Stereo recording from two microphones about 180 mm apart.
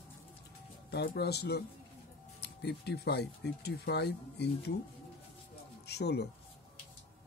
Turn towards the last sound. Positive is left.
turn(degrees=65)  # may be behind; listen again after turning